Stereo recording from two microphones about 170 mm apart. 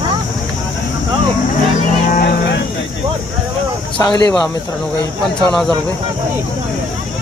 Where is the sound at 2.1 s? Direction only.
65° left (ahead or behind).